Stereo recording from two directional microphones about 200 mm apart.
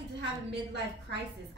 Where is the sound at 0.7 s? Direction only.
60° right (ahead or behind).